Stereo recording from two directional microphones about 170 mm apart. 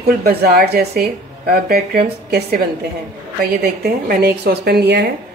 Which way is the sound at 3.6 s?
65° right (ahead or behind).